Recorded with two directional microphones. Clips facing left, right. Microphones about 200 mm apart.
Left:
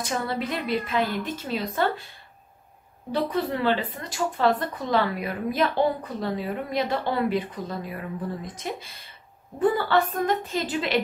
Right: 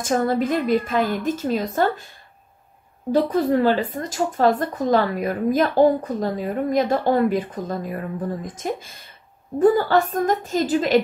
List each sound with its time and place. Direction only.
0.0 s speech: 45° right (ahead or behind)
3.1 s speech: 45° right (ahead or behind)